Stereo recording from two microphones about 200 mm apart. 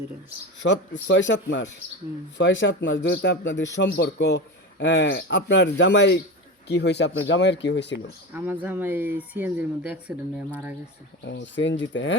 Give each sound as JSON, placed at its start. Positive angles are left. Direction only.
{"t": 0.6, "sound": "speech", "side_deg": 65}
{"t": 8.3, "sound": "speech", "side_deg": -10}
{"t": 11.2, "sound": "speech", "side_deg": 60}